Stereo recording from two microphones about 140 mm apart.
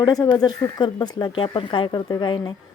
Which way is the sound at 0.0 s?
30° left (ahead or behind).